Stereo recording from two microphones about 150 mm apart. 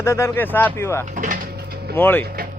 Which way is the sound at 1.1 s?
60° right (ahead or behind).